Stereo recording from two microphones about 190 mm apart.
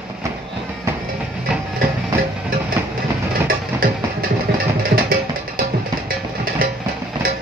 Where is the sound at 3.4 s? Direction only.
50° right (ahead or behind).